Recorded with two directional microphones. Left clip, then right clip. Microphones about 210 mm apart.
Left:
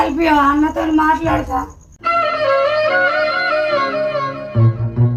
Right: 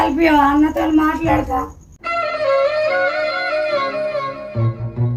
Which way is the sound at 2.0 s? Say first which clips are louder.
Left 4 dB; 25° left (ahead or behind).